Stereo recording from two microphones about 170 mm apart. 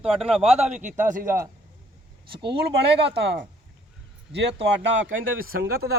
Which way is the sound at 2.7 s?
75° right (ahead or behind).